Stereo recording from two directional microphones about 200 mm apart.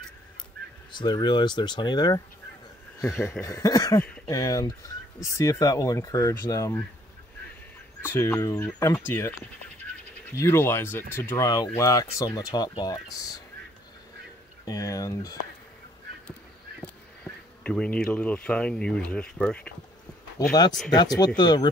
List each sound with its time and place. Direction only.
0.9 s speech: 20° left (ahead or behind)
8.0 s speech: 10° left (ahead or behind)
10.4 s speech: 10° left (ahead or behind)
14.6 s speech: 15° left (ahead or behind)
16.8 s speech: 5° left (ahead or behind)
20.9 s speech: 20° left (ahead or behind)